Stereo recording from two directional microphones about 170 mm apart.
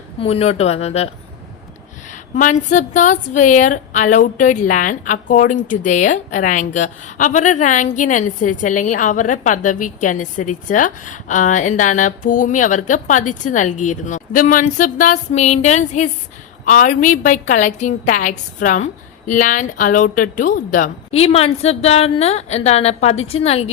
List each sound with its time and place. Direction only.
0.2 s a woman's voice: 35° left (ahead or behind)